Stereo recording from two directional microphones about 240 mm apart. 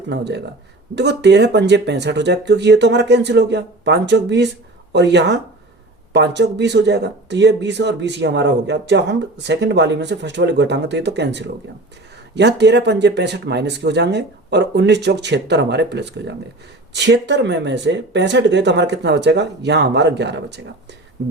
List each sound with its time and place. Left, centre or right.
0.1 s speech: right